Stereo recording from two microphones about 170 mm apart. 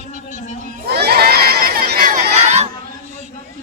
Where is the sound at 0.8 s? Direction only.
70° right (ahead or behind).